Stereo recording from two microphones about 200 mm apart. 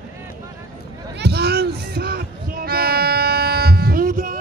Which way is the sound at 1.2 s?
55° right (ahead or behind).